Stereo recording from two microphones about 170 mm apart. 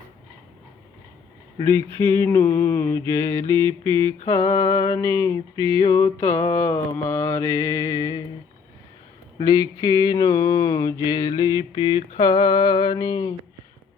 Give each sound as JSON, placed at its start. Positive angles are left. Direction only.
{"t": 1.5, "sound": "a sound", "side_deg": 15}
{"t": 6.9, "sound": "mantra", "side_deg": 15}
{"t": 9.4, "sound": "mantra", "side_deg": 20}